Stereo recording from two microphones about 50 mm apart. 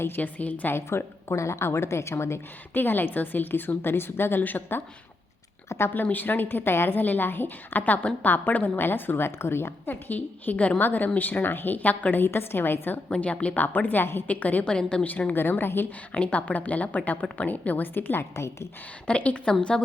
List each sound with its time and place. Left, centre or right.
0.2 s a woman's voice: left
0.7 s a woman's voice: left
2.7 s a woman's voice: left
4.4 s a woman's voice: left
5.6 s a sound: left
5.9 s a woman's voice: left
9.8 s a woman's voice: left
13.1 s speech: left
13.7 s a woman's voice: left
14.3 s a woman's voice: left
14.6 s speech: left
15.0 s a woman's voice: left
16.1 s a woman's voice: left
19.0 s speech: left